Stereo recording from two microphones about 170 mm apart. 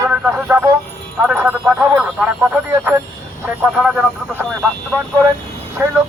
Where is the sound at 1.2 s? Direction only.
10° right (ahead or behind).